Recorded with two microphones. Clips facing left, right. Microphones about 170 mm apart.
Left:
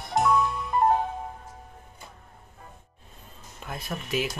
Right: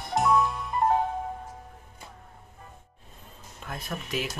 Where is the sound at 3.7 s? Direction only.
5° left (ahead or behind).